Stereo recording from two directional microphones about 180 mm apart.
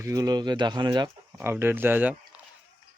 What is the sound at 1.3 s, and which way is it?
Speech, 10° right (ahead or behind).